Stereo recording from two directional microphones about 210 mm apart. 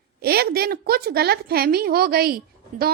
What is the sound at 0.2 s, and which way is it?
A woman's voice, 45° right (ahead or behind).